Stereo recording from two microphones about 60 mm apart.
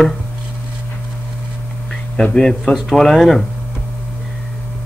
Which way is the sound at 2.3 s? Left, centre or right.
Centre.